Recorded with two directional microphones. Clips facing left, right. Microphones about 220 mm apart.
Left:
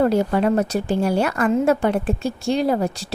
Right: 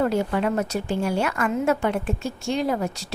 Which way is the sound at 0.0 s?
40° left (ahead or behind).